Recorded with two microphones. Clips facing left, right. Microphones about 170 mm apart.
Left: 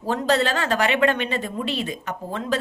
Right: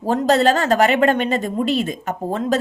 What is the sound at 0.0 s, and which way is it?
Speech, 45° right (ahead or behind).